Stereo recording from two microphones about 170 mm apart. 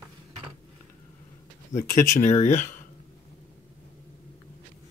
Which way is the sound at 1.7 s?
45° left (ahead or behind).